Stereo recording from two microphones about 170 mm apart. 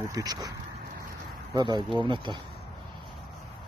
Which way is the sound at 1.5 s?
25° right (ahead or behind).